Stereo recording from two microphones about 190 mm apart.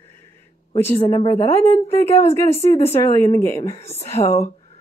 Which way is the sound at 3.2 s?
15° left (ahead or behind).